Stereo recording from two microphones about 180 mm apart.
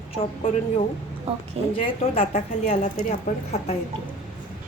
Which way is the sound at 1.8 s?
30° left (ahead or behind).